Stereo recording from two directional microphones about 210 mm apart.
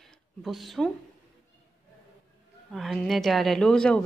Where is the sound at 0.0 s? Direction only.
Centre (ahead or behind).